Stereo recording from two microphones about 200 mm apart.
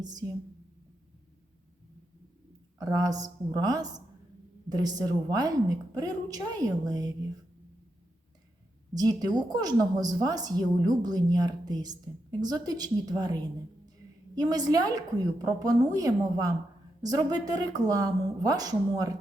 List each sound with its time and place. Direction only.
0.0 s a woman's voice: 20° right (ahead or behind)
2.7 s a woman's voice: 20° right (ahead or behind)
8.9 s a woman's voice: 20° right (ahead or behind)